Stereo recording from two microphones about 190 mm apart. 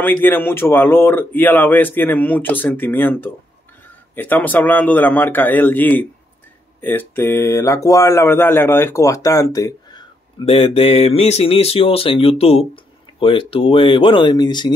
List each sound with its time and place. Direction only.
0.0 s speech: 10° left (ahead or behind)
10.4 s speech: 30° left (ahead or behind)